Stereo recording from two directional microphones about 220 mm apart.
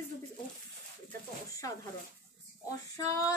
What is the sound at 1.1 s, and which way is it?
Speech, 15° left (ahead or behind).